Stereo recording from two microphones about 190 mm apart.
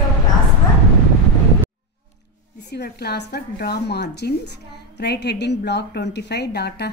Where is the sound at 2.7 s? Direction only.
60° left (ahead or behind).